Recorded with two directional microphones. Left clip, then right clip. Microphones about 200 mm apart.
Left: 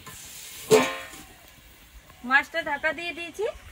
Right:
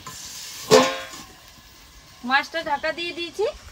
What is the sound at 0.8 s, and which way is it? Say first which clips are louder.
Music: right 6 dB; 10° right (ahead or behind).